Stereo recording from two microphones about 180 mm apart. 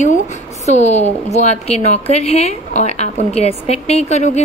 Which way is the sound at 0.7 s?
40° left (ahead or behind).